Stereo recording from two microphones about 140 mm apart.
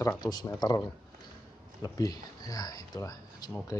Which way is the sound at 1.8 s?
25° left (ahead or behind).